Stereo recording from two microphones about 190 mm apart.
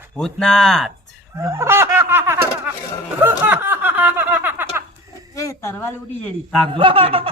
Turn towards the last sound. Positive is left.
turn(degrees=-30)  # may be behind; listen again after turning